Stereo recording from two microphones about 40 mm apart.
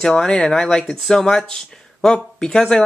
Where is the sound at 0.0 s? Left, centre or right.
Centre.